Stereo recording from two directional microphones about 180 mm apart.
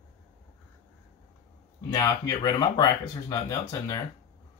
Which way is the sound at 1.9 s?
20° left (ahead or behind).